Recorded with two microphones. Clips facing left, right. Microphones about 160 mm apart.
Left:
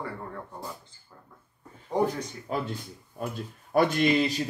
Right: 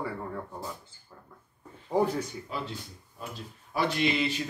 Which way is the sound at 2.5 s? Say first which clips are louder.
Left 5 dB; 50° left (ahead or behind).